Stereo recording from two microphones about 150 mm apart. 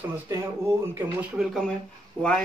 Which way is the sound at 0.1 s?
15° right (ahead or behind).